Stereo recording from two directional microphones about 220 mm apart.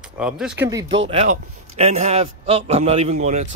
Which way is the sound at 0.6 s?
15° right (ahead or behind).